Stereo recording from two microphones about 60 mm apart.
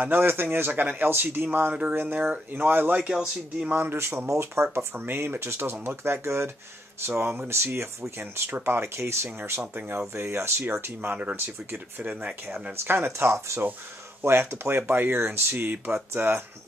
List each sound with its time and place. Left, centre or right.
0.0 s speech: right
1.7 s speech: right
3.1 s speech: centre
3.7 s speech: right
4.3 s speech: right
4.7 s speech: right
8.2 s speech: right
9.8 s speech: right
12.1 s speech: centre
12.7 s speech: right
16.1 s speech: right